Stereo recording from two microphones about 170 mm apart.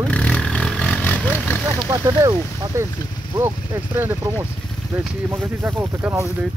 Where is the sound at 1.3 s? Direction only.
10° left (ahead or behind).